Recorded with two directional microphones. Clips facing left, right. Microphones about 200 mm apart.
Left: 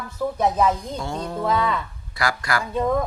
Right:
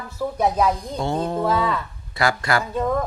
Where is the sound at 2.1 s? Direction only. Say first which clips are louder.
Right 3 dB; 25° right (ahead or behind).